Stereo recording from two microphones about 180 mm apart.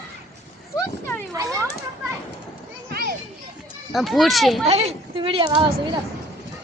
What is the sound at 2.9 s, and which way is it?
Children playing, 60° right (ahead or behind).